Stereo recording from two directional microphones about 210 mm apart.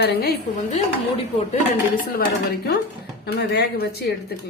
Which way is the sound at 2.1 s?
50° left (ahead or behind).